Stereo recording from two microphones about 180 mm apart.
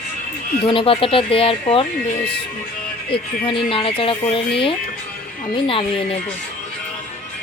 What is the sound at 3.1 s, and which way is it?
Speech, 30° left (ahead or behind).